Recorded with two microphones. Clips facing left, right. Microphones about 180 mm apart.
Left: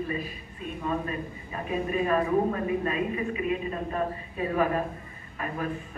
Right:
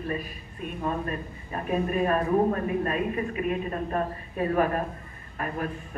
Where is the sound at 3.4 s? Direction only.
50° right (ahead or behind).